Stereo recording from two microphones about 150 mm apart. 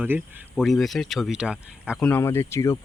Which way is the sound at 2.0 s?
15° left (ahead or behind).